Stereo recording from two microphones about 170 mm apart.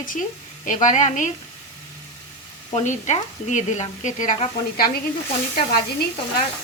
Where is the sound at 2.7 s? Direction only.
45° left (ahead or behind).